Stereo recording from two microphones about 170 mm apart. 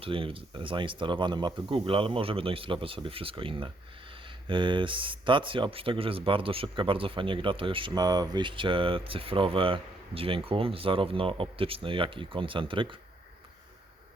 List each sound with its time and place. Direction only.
0.0 s speech: 30° right (ahead or behind)